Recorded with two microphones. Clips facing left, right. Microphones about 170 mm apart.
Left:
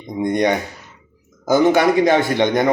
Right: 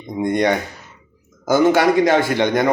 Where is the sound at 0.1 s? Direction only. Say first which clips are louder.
Even; 20° left (ahead or behind).